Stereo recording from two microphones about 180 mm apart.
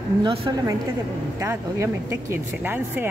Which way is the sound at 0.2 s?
25° right (ahead or behind).